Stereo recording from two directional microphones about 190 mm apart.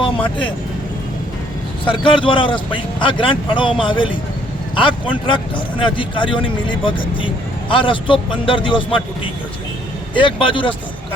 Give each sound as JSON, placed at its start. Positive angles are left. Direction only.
{"t": 1.8, "sound": "speech", "side_deg": 25}
{"t": 10.2, "sound": "speech", "side_deg": 25}